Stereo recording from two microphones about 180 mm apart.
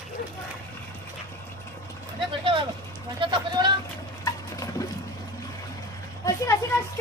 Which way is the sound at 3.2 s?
25° right (ahead or behind).